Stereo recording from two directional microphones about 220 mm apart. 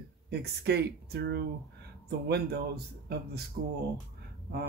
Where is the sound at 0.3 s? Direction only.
50° right (ahead or behind).